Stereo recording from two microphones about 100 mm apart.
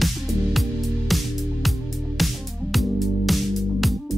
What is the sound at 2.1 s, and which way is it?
Music, centre (ahead or behind).